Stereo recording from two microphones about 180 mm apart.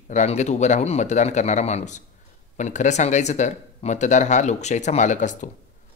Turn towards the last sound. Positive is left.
turn(degrees=45)  # may be behind; listen again after turning